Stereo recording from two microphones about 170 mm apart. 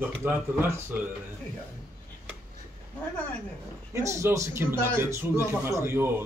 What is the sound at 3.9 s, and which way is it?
A man's voice, 15° right (ahead or behind).